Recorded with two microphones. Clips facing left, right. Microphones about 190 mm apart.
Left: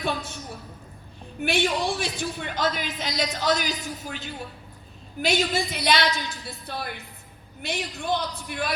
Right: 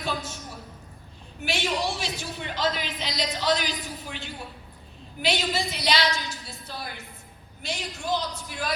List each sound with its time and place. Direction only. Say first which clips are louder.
0.0 s a woman's voice: left 2 dB; 60° left (ahead or behind)
1.4 s a man's voice: left 4 dB; 55° left (ahead or behind)